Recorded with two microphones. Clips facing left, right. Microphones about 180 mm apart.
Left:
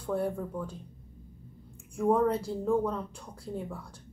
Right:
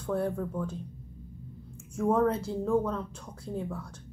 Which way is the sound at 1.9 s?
15° left (ahead or behind).